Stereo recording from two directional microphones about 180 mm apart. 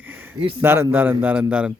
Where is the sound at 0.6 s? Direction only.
10° right (ahead or behind).